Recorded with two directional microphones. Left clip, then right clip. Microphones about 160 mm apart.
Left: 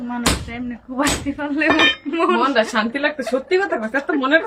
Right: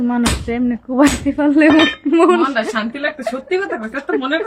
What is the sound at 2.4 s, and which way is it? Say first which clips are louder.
Speech: even; 20° left (ahead or behind).